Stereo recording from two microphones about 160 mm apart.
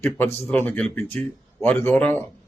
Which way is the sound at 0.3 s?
15° left (ahead or behind).